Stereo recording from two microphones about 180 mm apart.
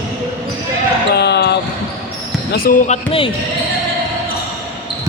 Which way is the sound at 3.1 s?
30° left (ahead or behind).